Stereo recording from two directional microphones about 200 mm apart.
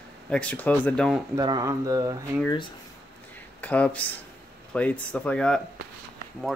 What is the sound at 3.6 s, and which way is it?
Speech, 5° left (ahead or behind).